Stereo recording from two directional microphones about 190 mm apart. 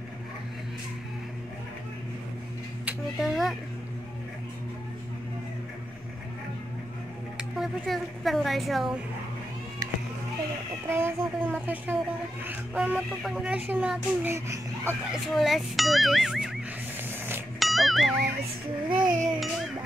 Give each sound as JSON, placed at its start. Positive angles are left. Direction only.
{"t": 2.8, "sound": "a sound", "side_deg": -5}
{"t": 7.3, "sound": "a woman's voice", "side_deg": 0}
{"t": 10.9, "sound": "speech", "side_deg": -10}
{"t": 15.2, "sound": "a child's voice", "side_deg": 0}
{"t": 17.6, "sound": "music", "side_deg": 0}
{"t": 18.9, "sound": "a sound", "side_deg": -25}